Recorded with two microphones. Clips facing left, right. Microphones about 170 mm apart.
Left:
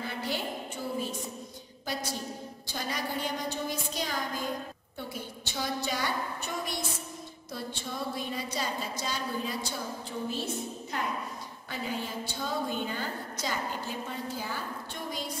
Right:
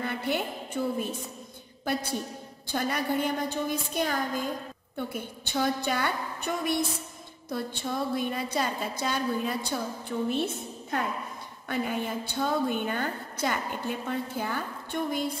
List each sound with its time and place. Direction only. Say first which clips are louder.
0.0 s a sound: right 4 dB; 60° right (ahead or behind)
0.8 s a woman's voice: right 10 dB; 55° right (ahead or behind)
2.7 s a woman's voice: right 6 dB; 55° right (ahead or behind)